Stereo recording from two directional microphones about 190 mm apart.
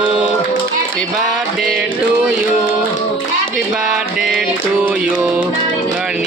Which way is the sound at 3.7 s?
Centre (ahead or behind).